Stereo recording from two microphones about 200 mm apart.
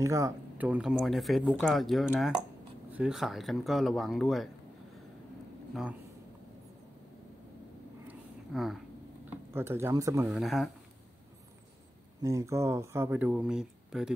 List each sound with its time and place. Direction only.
0.0 s speech: 15° right (ahead or behind); by 4.5 s centre (ahead or behind)
8.1 s a sound: centre (ahead or behind)
9.5 s speech: 10° right (ahead or behind)
10.2 s speech: centre (ahead or behind)
12.2 s speech: 15° right (ahead or behind)